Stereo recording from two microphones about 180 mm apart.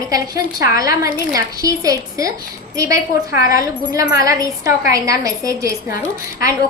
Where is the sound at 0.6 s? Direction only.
20° right (ahead or behind).